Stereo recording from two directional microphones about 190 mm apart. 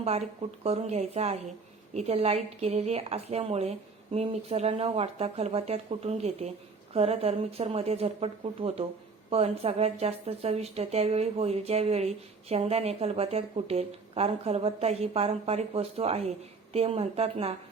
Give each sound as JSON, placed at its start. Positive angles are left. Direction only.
{"t": 0.0, "sound": "a woman's voice", "side_deg": -35}